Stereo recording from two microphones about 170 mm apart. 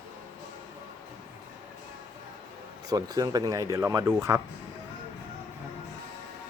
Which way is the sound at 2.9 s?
20° right (ahead or behind).